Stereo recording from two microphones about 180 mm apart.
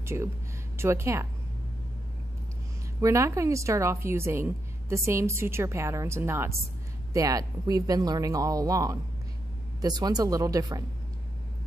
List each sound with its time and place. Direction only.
0.0 s a woman's voice: 15° right (ahead or behind)
3.0 s a woman's voice: 15° right (ahead or behind)